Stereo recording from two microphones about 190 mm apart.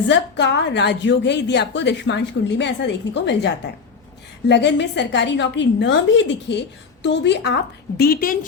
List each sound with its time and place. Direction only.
0.1 s a woman's voice: 65° left (ahead or behind); by 8.4 s 50° left (ahead or behind)